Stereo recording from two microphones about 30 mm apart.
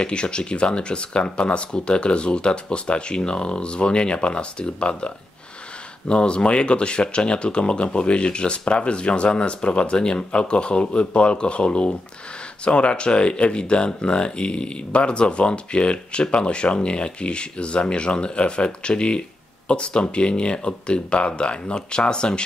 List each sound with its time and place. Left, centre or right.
0.0 s speech: left